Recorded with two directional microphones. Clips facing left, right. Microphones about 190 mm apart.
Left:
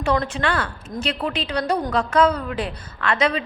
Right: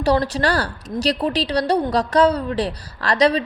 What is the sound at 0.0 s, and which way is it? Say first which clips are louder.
A woman's voice: right 4 dB; 35° right (ahead or behind).